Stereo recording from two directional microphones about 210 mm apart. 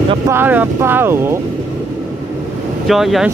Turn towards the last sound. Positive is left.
turn(degrees=0)  # may be behind; listen again after turning